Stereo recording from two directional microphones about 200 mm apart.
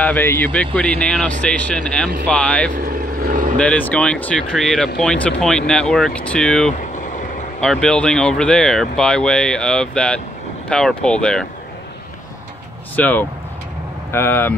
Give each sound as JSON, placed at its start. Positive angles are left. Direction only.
{"t": 0.0, "sound": "speech", "side_deg": 10}
{"t": 2.8, "sound": "vehicle", "side_deg": -45}
{"t": 3.5, "sound": "speech", "side_deg": 5}
{"t": 12.9, "sound": "speech", "side_deg": 10}